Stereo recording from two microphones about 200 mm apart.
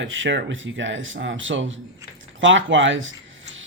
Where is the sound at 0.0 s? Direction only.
70° right (ahead or behind).